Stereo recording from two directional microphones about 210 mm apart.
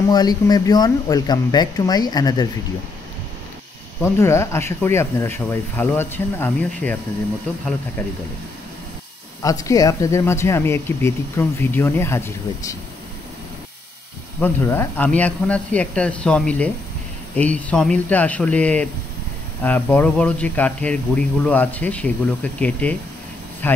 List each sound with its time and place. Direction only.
0.1 s speech: 20° left (ahead or behind)
4.0 s speech: 15° left (ahead or behind)
9.4 s speech: 15° left (ahead or behind)
14.4 s speech: 10° left (ahead or behind)